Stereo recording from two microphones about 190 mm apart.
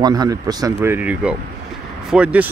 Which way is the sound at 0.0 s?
20° right (ahead or behind).